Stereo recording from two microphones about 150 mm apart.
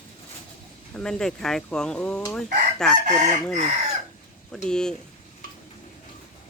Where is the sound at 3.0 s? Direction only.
50° right (ahead or behind).